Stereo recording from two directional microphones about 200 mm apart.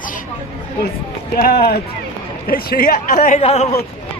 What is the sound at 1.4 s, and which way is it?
A man's voice, 50° left (ahead or behind).